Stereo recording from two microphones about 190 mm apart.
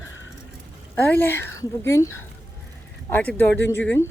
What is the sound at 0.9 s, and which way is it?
Speech, 10° left (ahead or behind).